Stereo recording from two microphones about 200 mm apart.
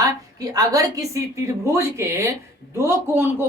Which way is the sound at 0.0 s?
15° right (ahead or behind).